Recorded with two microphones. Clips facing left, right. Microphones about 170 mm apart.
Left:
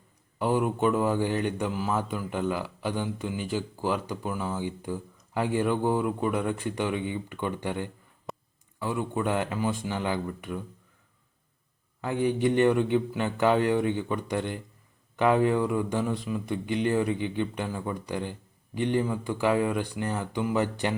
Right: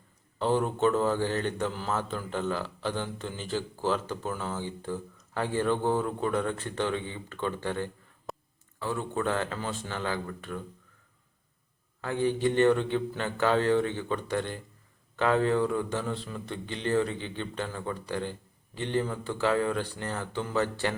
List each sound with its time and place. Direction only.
0.3 s speech: 10° left (ahead or behind)
8.3 s a sound: centre (ahead or behind)
8.8 s speech: 15° left (ahead or behind)
12.0 s speech: 15° left (ahead or behind)